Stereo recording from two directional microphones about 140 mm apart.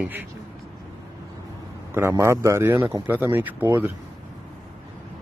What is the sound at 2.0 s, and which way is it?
A man's voice, 20° right (ahead or behind).